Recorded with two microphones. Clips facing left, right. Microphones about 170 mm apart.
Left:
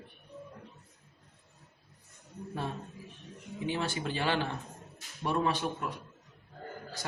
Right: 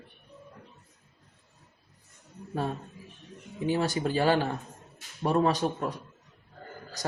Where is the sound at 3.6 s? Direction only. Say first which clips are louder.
Right 6 dB; 40° right (ahead or behind).